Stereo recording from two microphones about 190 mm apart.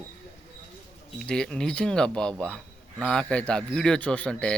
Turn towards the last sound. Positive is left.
turn(degrees=5)  # may be behind; listen again after turning